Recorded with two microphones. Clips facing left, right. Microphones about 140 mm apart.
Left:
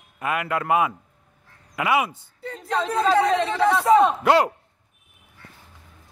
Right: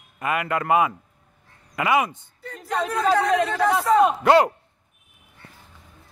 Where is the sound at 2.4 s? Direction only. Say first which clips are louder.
Left 4 dB; 25° left (ahead or behind).